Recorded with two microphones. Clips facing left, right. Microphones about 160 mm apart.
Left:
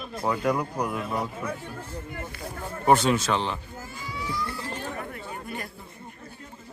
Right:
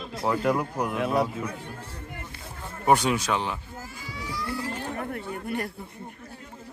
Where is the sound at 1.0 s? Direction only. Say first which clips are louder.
Right 6 dB; 75° right (ahead or behind).